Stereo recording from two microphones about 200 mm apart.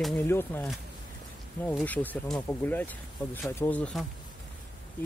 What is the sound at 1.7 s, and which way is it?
Speech, 10° left (ahead or behind).